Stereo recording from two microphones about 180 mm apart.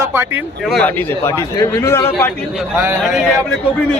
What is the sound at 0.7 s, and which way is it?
A man's voice, 5° left (ahead or behind).